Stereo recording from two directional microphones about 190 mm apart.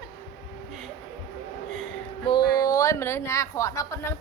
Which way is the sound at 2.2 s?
25° left (ahead or behind).